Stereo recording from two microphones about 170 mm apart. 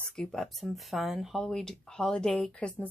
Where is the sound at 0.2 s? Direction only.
Centre (ahead or behind).